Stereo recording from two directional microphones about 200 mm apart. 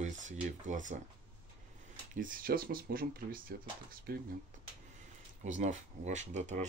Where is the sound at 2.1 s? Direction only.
45° right (ahead or behind).